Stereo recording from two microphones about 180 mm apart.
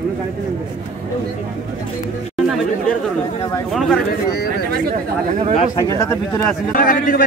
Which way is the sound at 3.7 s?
Centre (ahead or behind).